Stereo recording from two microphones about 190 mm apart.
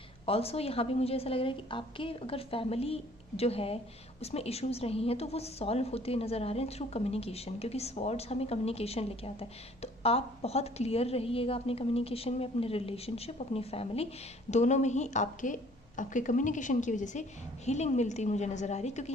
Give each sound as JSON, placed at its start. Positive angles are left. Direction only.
{"t": 0.3, "sound": "a woman's voice", "side_deg": 30}